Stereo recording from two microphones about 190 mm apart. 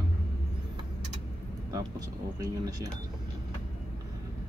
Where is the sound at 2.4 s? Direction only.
20° right (ahead or behind).